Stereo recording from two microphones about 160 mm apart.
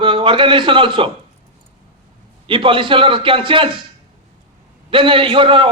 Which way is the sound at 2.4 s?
30° right (ahead or behind).